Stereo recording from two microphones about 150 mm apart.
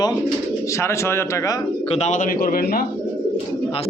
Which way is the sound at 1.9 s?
50° left (ahead or behind).